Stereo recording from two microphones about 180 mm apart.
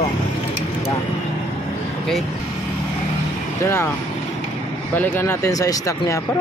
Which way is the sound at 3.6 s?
15° left (ahead or behind).